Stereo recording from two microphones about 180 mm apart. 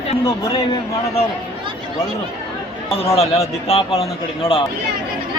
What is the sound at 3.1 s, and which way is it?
A man's voice, 35° left (ahead or behind).